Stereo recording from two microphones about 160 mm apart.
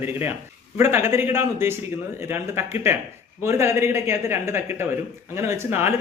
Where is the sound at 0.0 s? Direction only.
15° right (ahead or behind).